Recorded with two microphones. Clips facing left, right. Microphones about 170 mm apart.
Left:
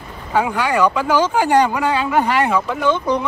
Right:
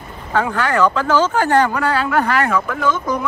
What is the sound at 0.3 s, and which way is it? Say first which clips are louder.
Speech: even; 10° left (ahead or behind).